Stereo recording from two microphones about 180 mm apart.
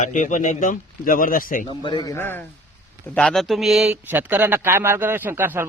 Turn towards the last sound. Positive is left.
turn(degrees=-10)  # may be behind; listen again after turning